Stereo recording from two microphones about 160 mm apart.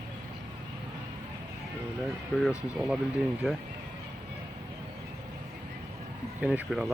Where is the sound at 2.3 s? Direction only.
10° left (ahead or behind).